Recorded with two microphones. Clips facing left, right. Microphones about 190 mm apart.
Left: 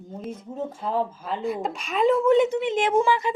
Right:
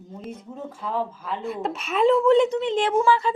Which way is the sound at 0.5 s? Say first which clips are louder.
Left 2 dB; 35° left (ahead or behind).